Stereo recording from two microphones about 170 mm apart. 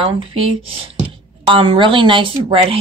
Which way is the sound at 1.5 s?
30° right (ahead or behind).